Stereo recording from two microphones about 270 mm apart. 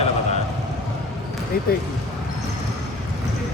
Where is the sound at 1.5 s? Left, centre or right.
Left.